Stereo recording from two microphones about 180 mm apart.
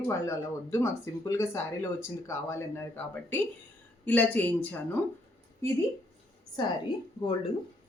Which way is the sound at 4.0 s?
10° left (ahead or behind).